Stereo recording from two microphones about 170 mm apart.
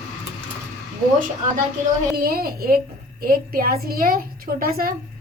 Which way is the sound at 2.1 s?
60° right (ahead or behind).